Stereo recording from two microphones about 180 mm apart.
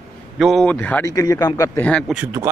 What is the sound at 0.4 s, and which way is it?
Speech, centre (ahead or behind).